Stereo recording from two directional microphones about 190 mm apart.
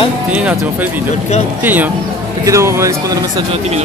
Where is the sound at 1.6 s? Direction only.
10° right (ahead or behind).